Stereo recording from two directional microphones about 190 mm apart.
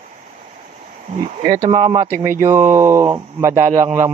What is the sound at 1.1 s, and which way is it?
Speech, 40° right (ahead or behind).